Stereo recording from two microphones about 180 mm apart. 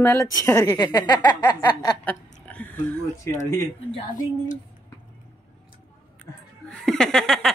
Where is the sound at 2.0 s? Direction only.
10° left (ahead or behind).